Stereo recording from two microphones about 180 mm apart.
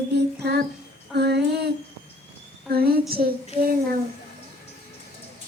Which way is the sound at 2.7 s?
60° right (ahead or behind).